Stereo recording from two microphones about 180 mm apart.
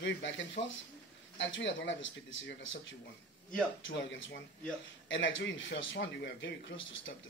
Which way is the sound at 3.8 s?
90° left.